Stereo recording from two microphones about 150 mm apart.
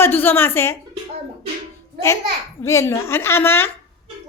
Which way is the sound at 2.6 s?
20° left (ahead or behind).